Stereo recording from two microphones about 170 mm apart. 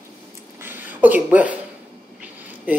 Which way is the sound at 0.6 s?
10° right (ahead or behind).